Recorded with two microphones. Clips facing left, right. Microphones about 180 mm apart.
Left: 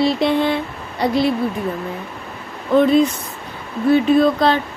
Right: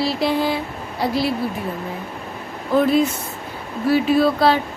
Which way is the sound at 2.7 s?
5° right (ahead or behind).